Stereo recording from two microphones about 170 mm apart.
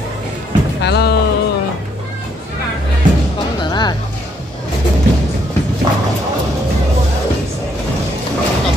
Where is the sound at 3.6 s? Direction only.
25° left (ahead or behind).